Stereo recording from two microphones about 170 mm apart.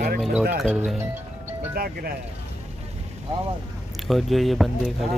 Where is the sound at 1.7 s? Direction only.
60° right (ahead or behind).